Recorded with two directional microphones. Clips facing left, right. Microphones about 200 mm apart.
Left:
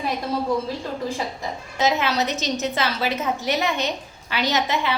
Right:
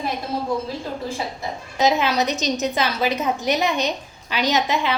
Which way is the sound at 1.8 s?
15° right (ahead or behind).